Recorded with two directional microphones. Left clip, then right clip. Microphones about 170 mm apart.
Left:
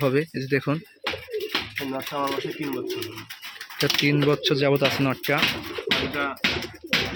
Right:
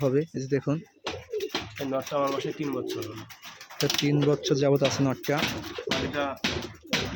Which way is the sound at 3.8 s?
5° right (ahead or behind).